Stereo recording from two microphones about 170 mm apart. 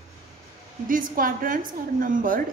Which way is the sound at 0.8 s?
55° right (ahead or behind).